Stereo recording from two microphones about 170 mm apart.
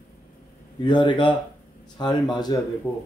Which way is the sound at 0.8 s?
25° left (ahead or behind).